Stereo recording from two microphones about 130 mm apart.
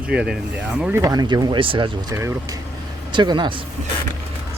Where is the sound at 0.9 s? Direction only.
30° right (ahead or behind).